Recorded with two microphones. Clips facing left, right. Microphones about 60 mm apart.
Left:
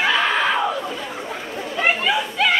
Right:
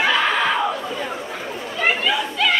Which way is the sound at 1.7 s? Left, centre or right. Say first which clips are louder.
Left 1 dB; centre.